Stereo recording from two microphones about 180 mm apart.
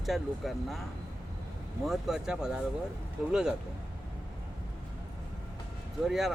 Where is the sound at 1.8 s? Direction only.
Centre (ahead or behind).